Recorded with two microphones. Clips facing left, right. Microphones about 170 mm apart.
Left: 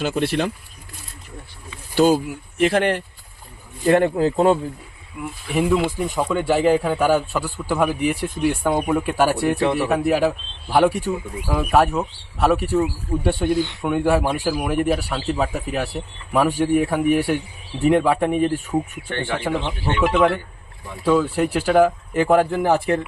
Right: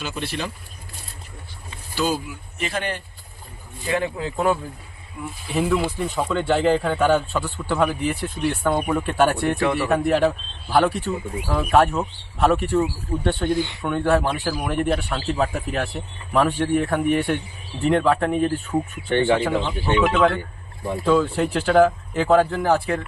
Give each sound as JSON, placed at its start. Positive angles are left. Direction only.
{"t": 0.0, "sound": "speech", "side_deg": 60}
{"t": 2.6, "sound": "speech", "side_deg": 70}
{"t": 3.8, "sound": "speech", "side_deg": 55}
{"t": 4.2, "sound": "speech", "side_deg": 35}
{"t": 5.2, "sound": "a man's voice", "side_deg": 10}
{"t": 19.0, "sound": "speech", "side_deg": -15}
{"t": 19.6, "sound": "a man's voice", "side_deg": 15}